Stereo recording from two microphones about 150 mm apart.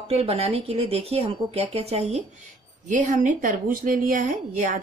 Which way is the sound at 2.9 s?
55° right (ahead or behind).